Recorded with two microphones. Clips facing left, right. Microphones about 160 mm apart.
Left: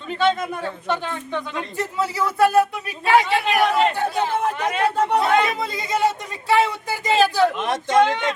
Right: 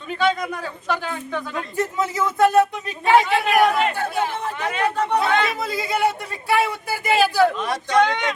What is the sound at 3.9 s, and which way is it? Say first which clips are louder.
Speech: left 1 dB; 15° left (ahead or behind).